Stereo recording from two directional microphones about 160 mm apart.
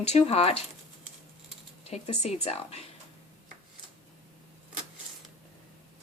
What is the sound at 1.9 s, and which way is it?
Speech, 45° left (ahead or behind).